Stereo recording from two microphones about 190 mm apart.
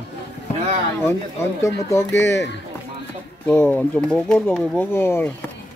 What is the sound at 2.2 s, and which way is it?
Speech, 70° left (ahead or behind).